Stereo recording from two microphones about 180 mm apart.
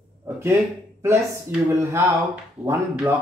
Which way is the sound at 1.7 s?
15° right (ahead or behind).